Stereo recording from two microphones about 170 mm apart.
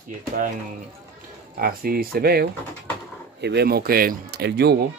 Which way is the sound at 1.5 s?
60° right (ahead or behind).